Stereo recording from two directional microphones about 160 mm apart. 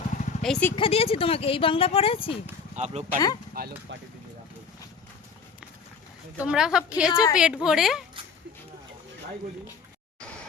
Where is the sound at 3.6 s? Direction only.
70° right (ahead or behind).